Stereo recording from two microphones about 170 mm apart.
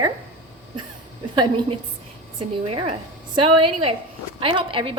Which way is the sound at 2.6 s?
30° right (ahead or behind).